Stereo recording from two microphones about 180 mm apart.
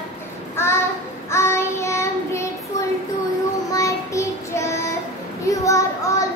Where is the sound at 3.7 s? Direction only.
15° left (ahead or behind).